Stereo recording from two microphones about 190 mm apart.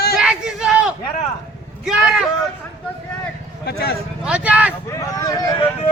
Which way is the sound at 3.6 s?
60° left (ahead or behind).